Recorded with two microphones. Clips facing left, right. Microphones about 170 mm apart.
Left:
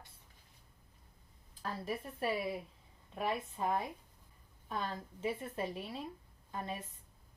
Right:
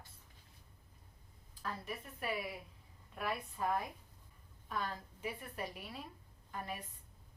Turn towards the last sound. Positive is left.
turn(degrees=25)  # may be behind; listen again after turning